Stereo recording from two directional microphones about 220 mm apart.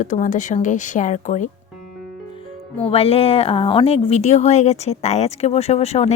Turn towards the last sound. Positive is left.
turn(degrees=30)  # may be behind; listen again after turning